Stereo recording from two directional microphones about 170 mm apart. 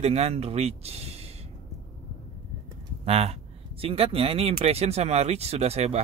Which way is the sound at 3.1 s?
35° right (ahead or behind).